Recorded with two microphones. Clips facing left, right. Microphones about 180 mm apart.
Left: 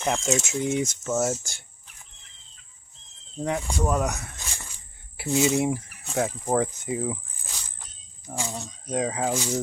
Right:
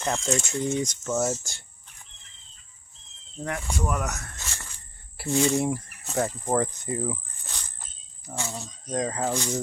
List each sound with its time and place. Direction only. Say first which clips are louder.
0.0 s speech: left 2 dB; 10° left (ahead or behind)
3.4 s speech: left 4 dB; 20° left (ahead or behind)